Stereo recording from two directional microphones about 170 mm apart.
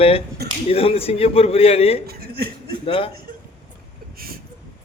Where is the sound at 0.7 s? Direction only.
35° left (ahead or behind).